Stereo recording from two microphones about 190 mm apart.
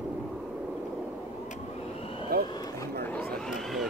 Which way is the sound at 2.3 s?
50° right (ahead or behind).